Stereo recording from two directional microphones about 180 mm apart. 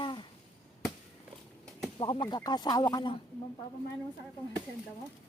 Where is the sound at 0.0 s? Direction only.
25° left (ahead or behind).